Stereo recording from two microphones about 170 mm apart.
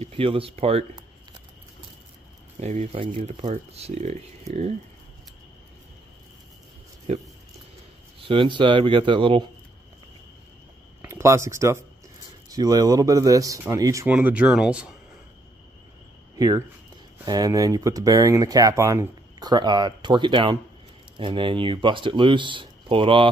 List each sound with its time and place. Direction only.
0.0 s speech: 30° right (ahead or behind)
2.6 s speech: 40° right (ahead or behind)
8.3 s speech: 30° right (ahead or behind)
11.0 s speech: 15° right (ahead or behind)
14.0 s speech: 10° right (ahead or behind)
16.3 s speech: 20° right (ahead or behind)